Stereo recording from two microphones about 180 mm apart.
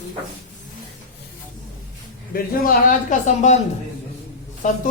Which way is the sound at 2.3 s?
50° left (ahead or behind).